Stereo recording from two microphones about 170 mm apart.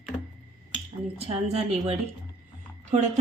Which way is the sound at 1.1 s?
35° right (ahead or behind).